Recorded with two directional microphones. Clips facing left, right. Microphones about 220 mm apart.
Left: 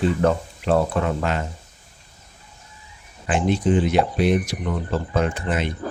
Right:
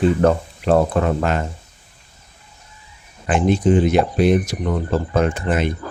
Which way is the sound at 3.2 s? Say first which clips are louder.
Right 4 dB; 50° right (ahead or behind).